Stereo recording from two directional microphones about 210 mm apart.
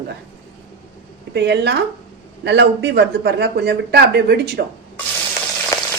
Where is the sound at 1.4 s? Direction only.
55° right (ahead or behind).